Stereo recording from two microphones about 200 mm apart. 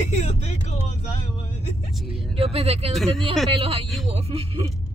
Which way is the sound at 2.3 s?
30° right (ahead or behind).